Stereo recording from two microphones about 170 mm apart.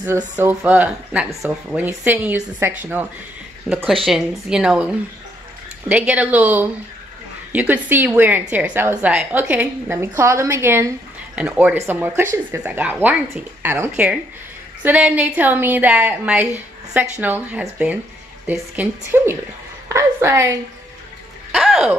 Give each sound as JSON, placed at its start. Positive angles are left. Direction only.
{"t": 0.0, "sound": "a woman's voice", "side_deg": -15}
{"t": 3.6, "sound": "speech", "side_deg": 0}
{"t": 5.9, "sound": "a woman's voice", "side_deg": -10}
{"t": 21.5, "sound": "a sound", "side_deg": 0}